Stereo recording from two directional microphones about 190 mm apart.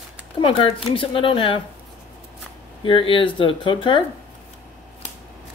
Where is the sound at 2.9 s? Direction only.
25° left (ahead or behind).